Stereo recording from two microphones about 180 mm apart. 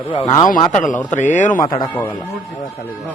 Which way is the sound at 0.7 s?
45° left (ahead or behind).